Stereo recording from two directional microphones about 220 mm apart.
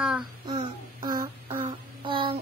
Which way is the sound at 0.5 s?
20° right (ahead or behind).